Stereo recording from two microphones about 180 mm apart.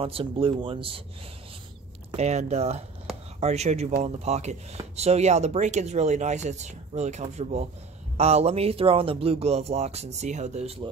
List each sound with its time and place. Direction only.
0.0 s speech: 30° right (ahead or behind)
2.1 s speech: 40° right (ahead or behind)